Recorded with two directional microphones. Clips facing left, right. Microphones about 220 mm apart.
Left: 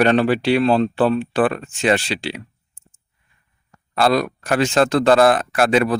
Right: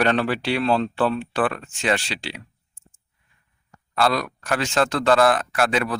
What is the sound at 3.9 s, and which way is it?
A man's voice, 30° left (ahead or behind).